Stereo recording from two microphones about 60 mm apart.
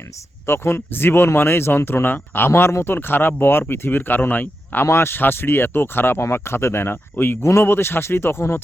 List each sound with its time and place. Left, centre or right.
0.4 s speech: left
2.5 s speech: left
4.9 s speech: left